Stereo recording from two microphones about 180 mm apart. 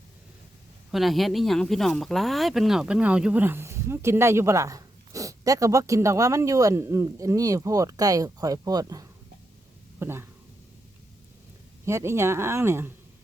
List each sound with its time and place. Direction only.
0.9 s speech: centre (ahead or behind)
11.9 s speech: 15° right (ahead or behind)